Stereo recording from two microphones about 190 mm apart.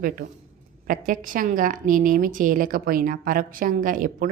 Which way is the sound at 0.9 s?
45° right (ahead or behind).